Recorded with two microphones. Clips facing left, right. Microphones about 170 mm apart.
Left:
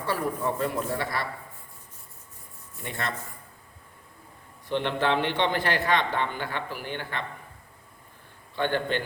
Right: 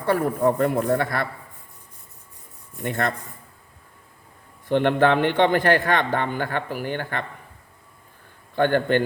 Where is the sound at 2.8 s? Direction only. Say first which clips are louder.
Right 9 dB; 50° right (ahead or behind).